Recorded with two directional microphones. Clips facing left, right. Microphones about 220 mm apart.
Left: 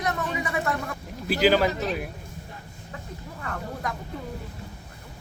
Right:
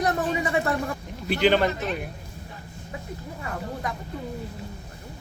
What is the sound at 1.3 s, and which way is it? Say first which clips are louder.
Speech: even; 5° left (ahead or behind).